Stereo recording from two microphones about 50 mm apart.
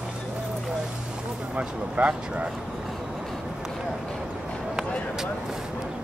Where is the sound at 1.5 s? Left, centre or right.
Right.